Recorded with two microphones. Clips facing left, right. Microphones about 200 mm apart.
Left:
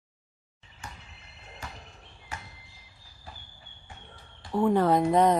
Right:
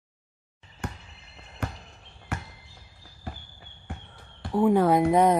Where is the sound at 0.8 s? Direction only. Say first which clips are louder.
Right 9 dB; 60° right (ahead or behind).